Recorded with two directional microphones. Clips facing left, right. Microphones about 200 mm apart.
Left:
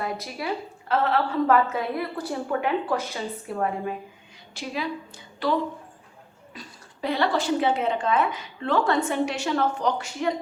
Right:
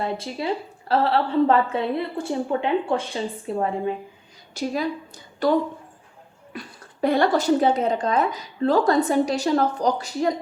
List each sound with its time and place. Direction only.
0.0 s a woman's voice: 25° right (ahead or behind)
4.5 s a woman's voice: 40° right (ahead or behind)
6.5 s speech: 55° right (ahead or behind); by 10.3 s 35° right (ahead or behind)